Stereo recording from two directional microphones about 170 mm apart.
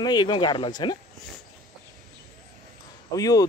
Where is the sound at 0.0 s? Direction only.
25° left (ahead or behind).